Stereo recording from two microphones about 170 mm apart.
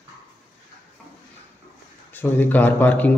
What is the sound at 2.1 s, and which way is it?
A man's voice, 10° left (ahead or behind).